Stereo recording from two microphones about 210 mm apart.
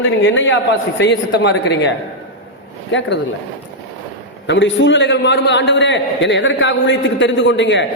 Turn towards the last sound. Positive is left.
turn(degrees=60)  # may be behind; listen again after turning